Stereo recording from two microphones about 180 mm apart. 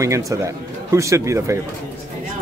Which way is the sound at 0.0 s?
15° right (ahead or behind).